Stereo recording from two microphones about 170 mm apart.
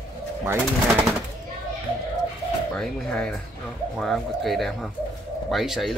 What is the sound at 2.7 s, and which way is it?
Speech, 5° left (ahead or behind).